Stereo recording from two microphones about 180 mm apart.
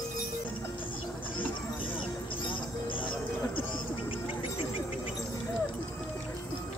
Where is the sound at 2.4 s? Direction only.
30° left (ahead or behind).